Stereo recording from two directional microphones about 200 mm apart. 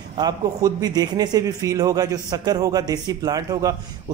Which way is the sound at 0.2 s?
20° right (ahead or behind).